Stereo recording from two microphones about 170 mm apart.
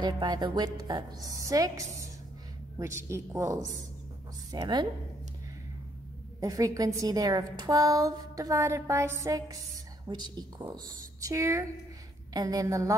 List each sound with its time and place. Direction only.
0.0 s a woman's voice: 25° right (ahead or behind)
6.4 s a woman's voice: 20° right (ahead or behind)